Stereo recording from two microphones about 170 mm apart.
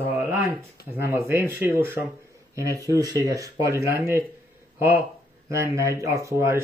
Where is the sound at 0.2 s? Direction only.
15° right (ahead or behind).